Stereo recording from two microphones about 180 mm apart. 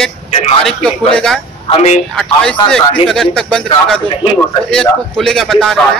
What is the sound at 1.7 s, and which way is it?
Speech, 35° left (ahead or behind).